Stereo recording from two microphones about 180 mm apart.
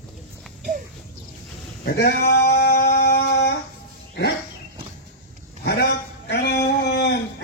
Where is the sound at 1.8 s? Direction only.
60° left (ahead or behind).